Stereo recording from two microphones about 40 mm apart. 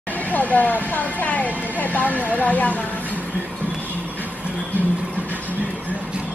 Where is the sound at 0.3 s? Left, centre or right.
Left.